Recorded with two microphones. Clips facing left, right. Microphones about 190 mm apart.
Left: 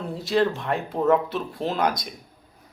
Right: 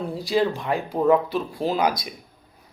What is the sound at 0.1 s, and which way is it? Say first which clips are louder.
Speech: left 1 dB; centre (ahead or behind).